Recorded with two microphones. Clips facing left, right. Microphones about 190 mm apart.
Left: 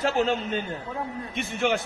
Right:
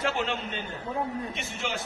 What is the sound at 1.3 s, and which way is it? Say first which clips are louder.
Speech: left 8 dB; 55° left (ahead or behind).